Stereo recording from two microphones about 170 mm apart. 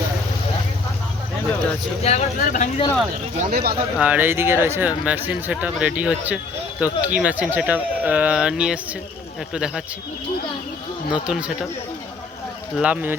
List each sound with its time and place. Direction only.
2.0 s speech: 45° left (ahead or behind)
3.3 s speech: 55° right (ahead or behind)
3.9 s speech: 10° right (ahead or behind)
11.1 s speech: 5° right (ahead or behind)
12.8 s speech: 10° right (ahead or behind)